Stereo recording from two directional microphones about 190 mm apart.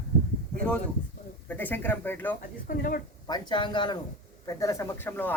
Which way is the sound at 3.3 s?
25° left (ahead or behind).